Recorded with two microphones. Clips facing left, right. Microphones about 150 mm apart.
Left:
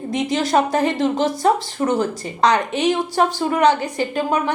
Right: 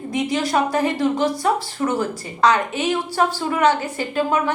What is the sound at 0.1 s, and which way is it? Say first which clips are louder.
A woman's voice: left 2 dB; 20° left (ahead or behind).